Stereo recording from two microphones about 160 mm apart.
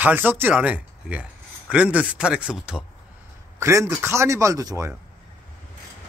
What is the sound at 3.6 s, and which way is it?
Speech, 20° right (ahead or behind).